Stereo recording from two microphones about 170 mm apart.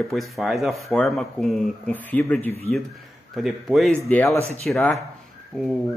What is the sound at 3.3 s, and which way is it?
Speech, centre (ahead or behind).